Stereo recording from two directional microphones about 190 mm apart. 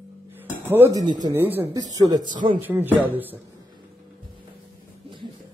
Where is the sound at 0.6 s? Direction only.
10° right (ahead or behind).